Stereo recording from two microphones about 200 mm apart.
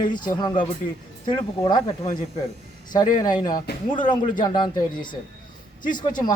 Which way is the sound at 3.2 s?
20° left (ahead or behind).